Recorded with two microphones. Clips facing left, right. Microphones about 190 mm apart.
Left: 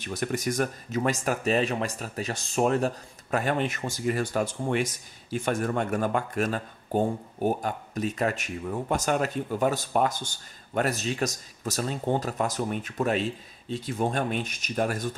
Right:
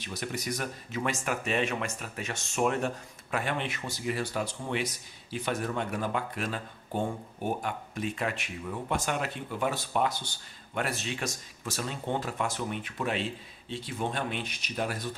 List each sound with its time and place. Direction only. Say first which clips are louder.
0.0 s speech: left 6 dB; 50° left (ahead or behind)